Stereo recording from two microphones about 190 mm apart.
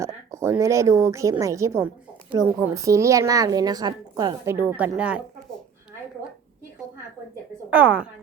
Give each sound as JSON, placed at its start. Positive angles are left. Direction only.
{"t": 0.0, "sound": "speech", "side_deg": -15}
{"t": 4.5, "sound": "speech", "side_deg": -10}
{"t": 7.7, "sound": "speech", "side_deg": -5}